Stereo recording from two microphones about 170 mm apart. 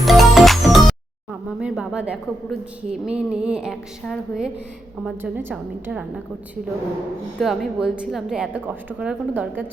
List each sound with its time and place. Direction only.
0.0 s music: centre (ahead or behind)
4.0 s speech: centre (ahead or behind)
5.0 s a woman's voice: 10° right (ahead or behind)
7.3 s a woman's voice: centre (ahead or behind)